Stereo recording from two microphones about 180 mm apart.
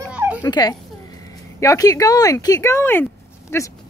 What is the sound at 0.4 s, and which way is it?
Speech, 20° left (ahead or behind).